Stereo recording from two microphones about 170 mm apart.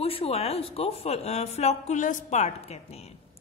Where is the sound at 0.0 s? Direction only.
35° left (ahead or behind).